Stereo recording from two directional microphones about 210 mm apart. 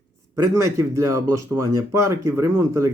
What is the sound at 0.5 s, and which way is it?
Speech, 15° right (ahead or behind).